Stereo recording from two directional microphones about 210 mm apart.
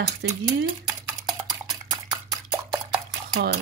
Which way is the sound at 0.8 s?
20° right (ahead or behind).